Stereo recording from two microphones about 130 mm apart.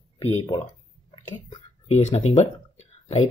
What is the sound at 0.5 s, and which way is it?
Speech, 30° left (ahead or behind).